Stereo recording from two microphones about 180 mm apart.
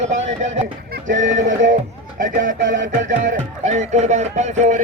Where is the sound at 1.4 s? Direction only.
90° right.